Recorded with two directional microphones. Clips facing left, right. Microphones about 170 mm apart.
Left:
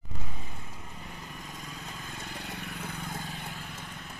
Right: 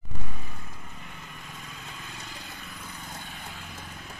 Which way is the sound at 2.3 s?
70° left (ahead or behind).